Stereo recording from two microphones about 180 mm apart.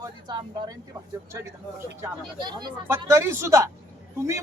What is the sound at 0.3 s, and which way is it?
A man's voice, 25° right (ahead or behind).